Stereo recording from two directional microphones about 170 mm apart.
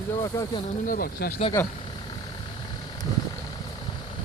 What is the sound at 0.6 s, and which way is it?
Speech, 55° left (ahead or behind).